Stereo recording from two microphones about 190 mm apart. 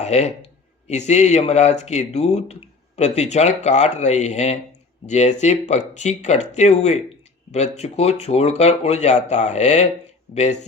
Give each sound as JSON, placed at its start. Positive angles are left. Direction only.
{"t": 0.0, "sound": "speech", "side_deg": 35}